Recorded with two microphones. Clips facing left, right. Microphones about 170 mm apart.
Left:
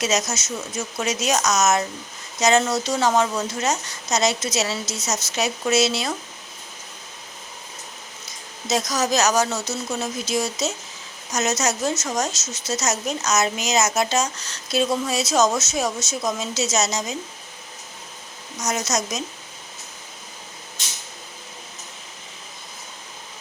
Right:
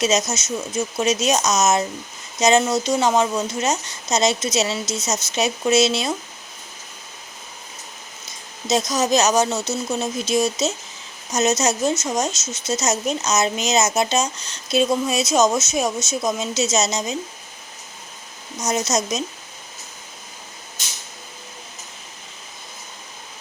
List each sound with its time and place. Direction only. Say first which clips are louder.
0.0 s speech: right 3 dB; 20° right (ahead or behind)
8.7 s speech: right 3 dB; 25° right (ahead or behind)
18.6 s speech: right 3 dB; 25° right (ahead or behind)